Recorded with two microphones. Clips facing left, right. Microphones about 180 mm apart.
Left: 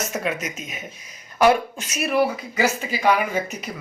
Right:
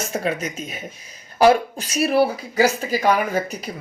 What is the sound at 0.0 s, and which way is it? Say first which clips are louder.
A woman's voice: right 2 dB; 30° right (ahead or behind).